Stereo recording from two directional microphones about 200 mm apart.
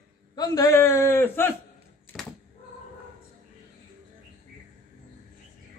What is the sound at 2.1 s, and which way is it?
Cat, 10° left (ahead or behind).